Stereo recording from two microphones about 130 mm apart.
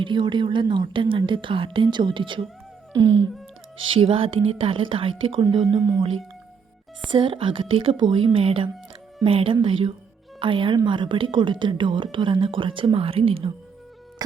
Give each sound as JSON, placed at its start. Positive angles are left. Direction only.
{"t": 0.0, "sound": "a woman's voice", "side_deg": -40}
{"t": 5.6, "sound": "speech", "side_deg": -30}
{"t": 7.1, "sound": "a woman's voice", "side_deg": -40}
{"t": 14.2, "sound": "music", "side_deg": -30}